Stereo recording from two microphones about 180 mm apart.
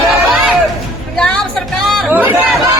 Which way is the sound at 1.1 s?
5° left (ahead or behind).